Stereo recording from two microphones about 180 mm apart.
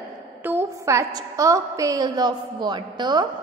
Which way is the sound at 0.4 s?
10° right (ahead or behind).